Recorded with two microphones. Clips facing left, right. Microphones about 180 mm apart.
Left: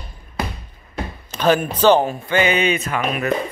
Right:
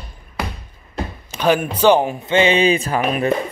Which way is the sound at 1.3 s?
10° right (ahead or behind).